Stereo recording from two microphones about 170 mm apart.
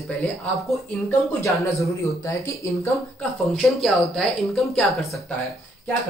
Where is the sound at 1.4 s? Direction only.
20° left (ahead or behind).